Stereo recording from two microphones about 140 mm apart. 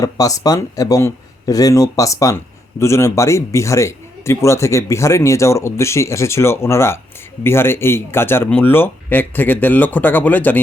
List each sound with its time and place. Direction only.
0.0 s speech: 25° left (ahead or behind)